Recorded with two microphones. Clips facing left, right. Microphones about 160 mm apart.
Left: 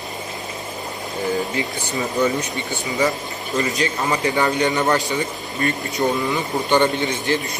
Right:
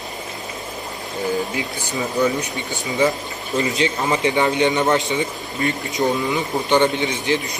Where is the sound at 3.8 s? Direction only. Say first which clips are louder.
Right 2 dB; 20° right (ahead or behind).